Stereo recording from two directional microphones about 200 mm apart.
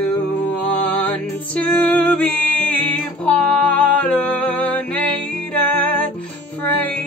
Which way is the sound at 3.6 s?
5° left (ahead or behind).